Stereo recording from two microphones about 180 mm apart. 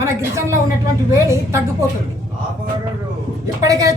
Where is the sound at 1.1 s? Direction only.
15° right (ahead or behind).